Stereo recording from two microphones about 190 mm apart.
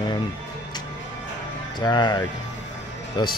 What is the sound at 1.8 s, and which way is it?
Speech, 20° left (ahead or behind).